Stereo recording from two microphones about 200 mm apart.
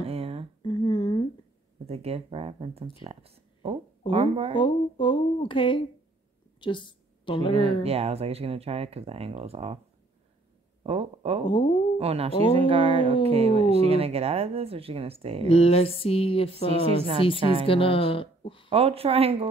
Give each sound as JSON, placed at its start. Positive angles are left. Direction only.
{"t": 0.0, "sound": "a sound", "side_deg": -30}
{"t": 0.6, "sound": "humming", "side_deg": 25}
{"t": 1.9, "sound": "speech", "side_deg": -30}
{"t": 4.6, "sound": "speech", "side_deg": 25}
{"t": 6.6, "sound": "a sound", "side_deg": 25}
{"t": 7.5, "sound": "speech", "side_deg": -30}
{"t": 10.8, "sound": "speech", "side_deg": -30}
{"t": 11.4, "sound": "speech", "side_deg": 25}
{"t": 12.0, "sound": "speech", "side_deg": -30}
{"t": 15.4, "sound": "speech", "side_deg": 30}
{"t": 16.7, "sound": "speech", "side_deg": -30}
{"t": 17.6, "sound": "speech", "side_deg": 25}
{"t": 18.7, "sound": "speech", "side_deg": -30}